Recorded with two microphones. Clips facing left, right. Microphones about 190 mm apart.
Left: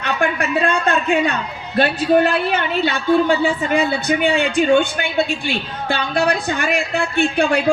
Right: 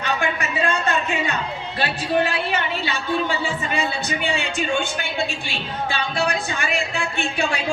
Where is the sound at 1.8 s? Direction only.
55° left (ahead or behind).